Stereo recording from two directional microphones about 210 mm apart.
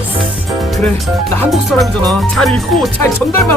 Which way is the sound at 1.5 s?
Centre (ahead or behind).